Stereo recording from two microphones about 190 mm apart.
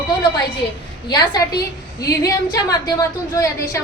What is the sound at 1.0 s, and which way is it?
A woman's voice, 20° left (ahead or behind).